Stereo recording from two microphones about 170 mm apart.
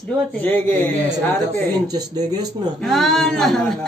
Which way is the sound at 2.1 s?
20° right (ahead or behind).